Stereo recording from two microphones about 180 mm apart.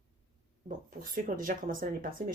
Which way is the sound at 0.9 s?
50° right (ahead or behind).